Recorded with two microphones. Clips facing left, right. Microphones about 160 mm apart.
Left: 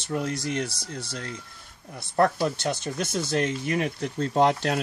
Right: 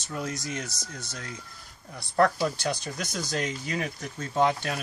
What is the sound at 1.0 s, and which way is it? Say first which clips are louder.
Speech: left 5 dB; 30° left (ahead or behind).